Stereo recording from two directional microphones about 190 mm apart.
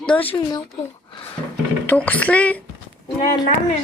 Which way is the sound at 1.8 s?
10° left (ahead or behind).